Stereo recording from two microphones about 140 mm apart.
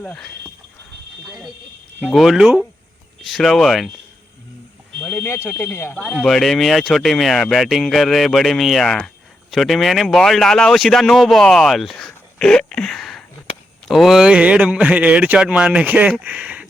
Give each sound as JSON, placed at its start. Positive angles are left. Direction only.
{"t": 0.0, "sound": "speech", "side_deg": 5}
{"t": 4.9, "sound": "smoke detector", "side_deg": 10}
{"t": 5.2, "sound": "speech", "side_deg": 15}